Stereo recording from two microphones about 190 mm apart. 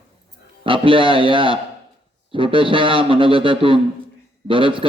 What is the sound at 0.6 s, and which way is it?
A man's voice, 25° right (ahead or behind).